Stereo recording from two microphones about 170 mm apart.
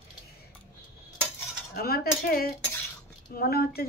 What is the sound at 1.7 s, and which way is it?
Speech, 60° left (ahead or behind).